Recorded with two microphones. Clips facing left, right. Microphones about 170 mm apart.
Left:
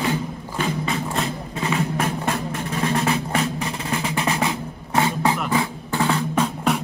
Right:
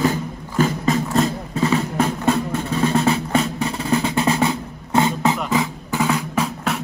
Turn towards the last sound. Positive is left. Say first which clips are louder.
# left 1 dB
turn(degrees=-5)  # may be behind; listen again after turning